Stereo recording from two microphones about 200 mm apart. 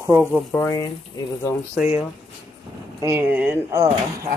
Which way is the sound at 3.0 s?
10° right (ahead or behind).